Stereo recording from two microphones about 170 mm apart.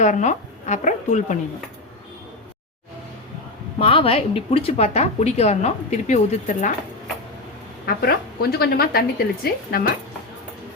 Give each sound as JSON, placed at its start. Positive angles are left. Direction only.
{"t": 0.0, "sound": "speech", "side_deg": 45}
{"t": 3.8, "sound": "a woman's voice", "side_deg": 35}
{"t": 7.9, "sound": "a woman's voice", "side_deg": 65}